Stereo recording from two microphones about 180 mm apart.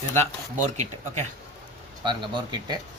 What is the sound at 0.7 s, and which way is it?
Speech, 40° right (ahead or behind).